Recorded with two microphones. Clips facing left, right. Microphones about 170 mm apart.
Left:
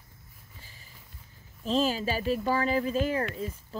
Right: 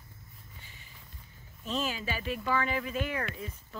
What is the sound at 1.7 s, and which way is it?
Speech, 35° left (ahead or behind).